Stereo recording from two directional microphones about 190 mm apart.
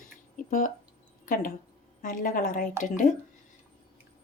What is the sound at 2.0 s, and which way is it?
Speech, 45° left (ahead or behind).